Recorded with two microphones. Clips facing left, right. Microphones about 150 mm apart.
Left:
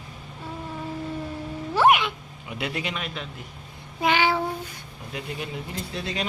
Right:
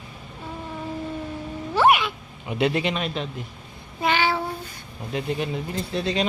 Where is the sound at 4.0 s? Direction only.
15° left (ahead or behind).